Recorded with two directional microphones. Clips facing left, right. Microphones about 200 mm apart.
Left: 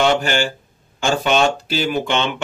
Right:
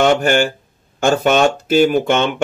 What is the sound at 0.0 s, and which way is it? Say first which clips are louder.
Speech: right 4 dB; 50° right (ahead or behind).